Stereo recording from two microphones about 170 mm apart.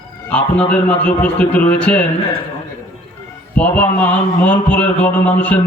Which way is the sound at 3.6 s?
10° left (ahead or behind).